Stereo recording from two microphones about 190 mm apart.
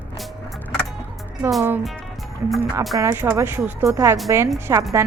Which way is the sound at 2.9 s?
15° right (ahead or behind).